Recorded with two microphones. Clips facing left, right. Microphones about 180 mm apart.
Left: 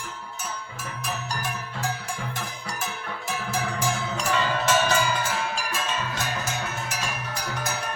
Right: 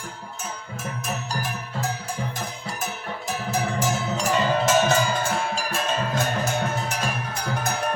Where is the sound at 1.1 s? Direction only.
35° right (ahead or behind).